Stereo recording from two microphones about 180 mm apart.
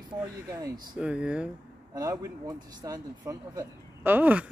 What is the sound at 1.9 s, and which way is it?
Speech, 20° right (ahead or behind).